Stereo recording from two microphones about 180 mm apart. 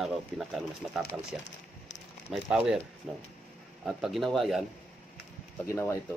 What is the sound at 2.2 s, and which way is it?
Speech, 5° right (ahead or behind).